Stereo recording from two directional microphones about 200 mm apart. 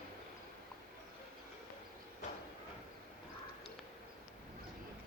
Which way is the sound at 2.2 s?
35° left (ahead or behind).